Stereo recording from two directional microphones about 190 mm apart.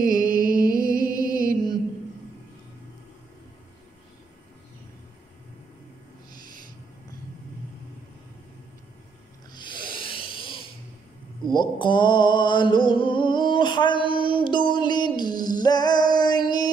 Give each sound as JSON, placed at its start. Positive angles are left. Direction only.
{"t": 0.0, "sound": "music", "side_deg": -45}
{"t": 1.0, "sound": "music", "side_deg": 20}
{"t": 1.5, "sound": "mantra", "side_deg": 20}
{"t": 9.5, "sound": "snoring", "side_deg": 25}
{"t": 11.5, "sound": "a sound", "side_deg": 25}